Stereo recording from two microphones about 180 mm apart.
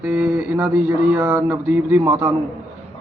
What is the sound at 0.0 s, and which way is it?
A man's voice, 10° right (ahead or behind).